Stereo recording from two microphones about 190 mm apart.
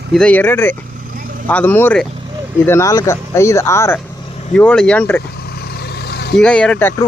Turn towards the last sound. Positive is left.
turn(degrees=10)  # may be behind; listen again after turning